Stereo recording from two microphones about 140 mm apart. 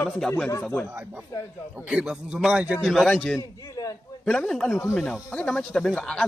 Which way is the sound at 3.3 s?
25° left (ahead or behind).